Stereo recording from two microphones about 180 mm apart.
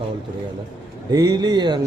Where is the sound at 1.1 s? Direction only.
20° right (ahead or behind).